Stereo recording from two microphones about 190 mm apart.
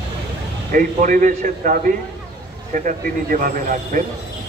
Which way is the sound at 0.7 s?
45° right (ahead or behind).